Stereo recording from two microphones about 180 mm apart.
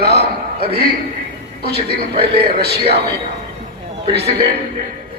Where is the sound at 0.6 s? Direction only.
60° right (ahead or behind).